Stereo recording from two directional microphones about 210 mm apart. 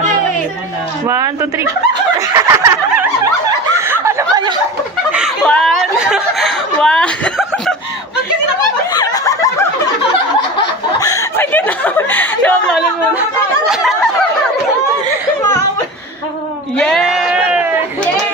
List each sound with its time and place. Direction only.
1.0 s speech: 15° right (ahead or behind)
2.1 s snicker: 15° right (ahead or behind)
5.1 s a sound: centre (ahead or behind)
8.9 s snicker: 15° left (ahead or behind)
11.0 s a sound: 15° left (ahead or behind); by 13.9 s centre (ahead or behind)
16.7 s sheep: 5° left (ahead or behind)